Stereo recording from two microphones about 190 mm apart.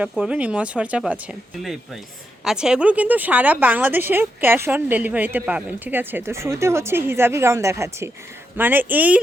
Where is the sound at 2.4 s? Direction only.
5° right (ahead or behind).